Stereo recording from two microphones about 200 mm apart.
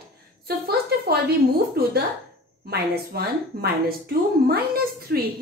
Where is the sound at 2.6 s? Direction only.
50° right (ahead or behind).